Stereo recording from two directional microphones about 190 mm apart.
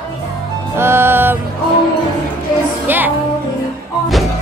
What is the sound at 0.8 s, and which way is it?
Music, 10° right (ahead or behind).